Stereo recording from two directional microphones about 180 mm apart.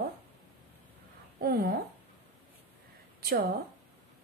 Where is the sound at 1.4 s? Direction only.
55° right (ahead or behind).